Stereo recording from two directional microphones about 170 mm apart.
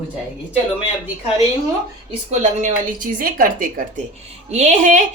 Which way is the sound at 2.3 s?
45° right (ahead or behind).